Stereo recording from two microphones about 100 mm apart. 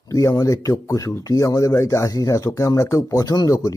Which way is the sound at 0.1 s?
35° left (ahead or behind).